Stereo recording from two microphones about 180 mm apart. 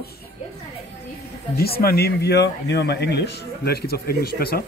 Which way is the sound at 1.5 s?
60° left (ahead or behind).